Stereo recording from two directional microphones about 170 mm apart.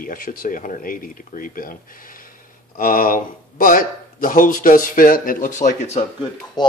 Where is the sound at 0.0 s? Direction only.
55° left (ahead or behind).